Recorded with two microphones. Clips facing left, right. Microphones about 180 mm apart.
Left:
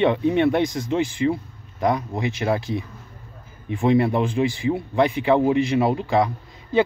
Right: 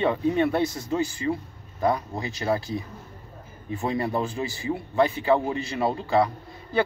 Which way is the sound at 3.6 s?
15° left (ahead or behind).